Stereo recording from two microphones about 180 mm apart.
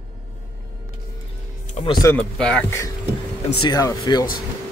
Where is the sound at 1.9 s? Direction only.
20° left (ahead or behind).